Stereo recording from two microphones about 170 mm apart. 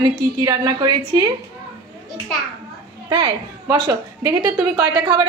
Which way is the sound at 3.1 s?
30° right (ahead or behind).